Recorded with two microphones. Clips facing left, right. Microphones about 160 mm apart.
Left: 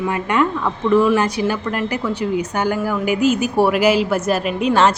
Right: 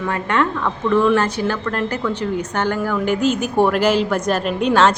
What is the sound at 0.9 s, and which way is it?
Speech, 5° left (ahead or behind).